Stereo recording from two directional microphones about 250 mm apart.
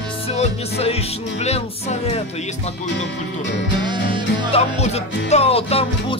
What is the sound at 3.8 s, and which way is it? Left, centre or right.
Music, centre.